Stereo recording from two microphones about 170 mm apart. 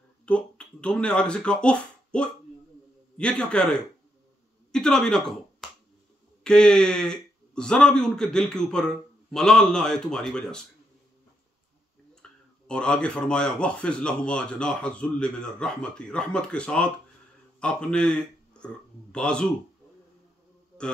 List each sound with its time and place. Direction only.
0.2 s speech: 5° left (ahead or behind)
4.7 s speech: 5° left (ahead or behind)
12.2 s speech: 5° left (ahead or behind)